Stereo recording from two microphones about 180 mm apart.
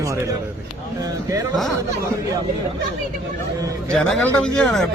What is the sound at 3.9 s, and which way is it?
Speech, 5° left (ahead or behind).